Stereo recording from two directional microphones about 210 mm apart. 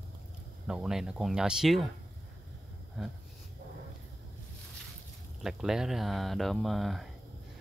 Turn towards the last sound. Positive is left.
turn(degrees=0)  # may be behind; listen again after turning